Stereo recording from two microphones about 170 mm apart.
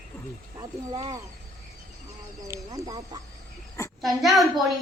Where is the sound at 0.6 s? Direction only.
20° right (ahead or behind).